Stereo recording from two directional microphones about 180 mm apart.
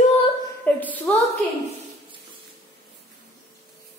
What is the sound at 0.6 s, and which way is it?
Speech, 10° left (ahead or behind).